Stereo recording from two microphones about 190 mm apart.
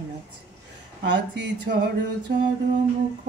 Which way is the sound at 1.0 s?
65° right (ahead or behind).